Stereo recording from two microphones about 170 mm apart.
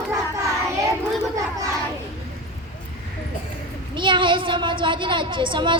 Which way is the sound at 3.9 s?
30° right (ahead or behind).